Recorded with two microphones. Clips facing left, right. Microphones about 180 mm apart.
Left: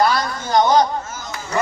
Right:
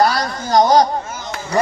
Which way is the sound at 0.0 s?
40° right (ahead or behind).